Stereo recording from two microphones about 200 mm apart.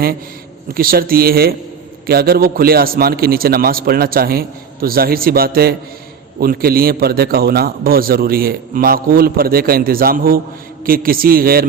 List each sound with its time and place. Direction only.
0.7 s a man's voice: 45° right (ahead or behind)